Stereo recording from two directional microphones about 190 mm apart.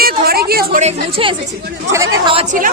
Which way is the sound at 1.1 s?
25° right (ahead or behind).